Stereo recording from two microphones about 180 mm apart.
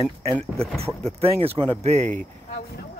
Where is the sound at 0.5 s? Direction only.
5° left (ahead or behind).